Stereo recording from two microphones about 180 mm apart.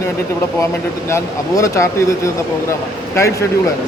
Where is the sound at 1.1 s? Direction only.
15° left (ahead or behind).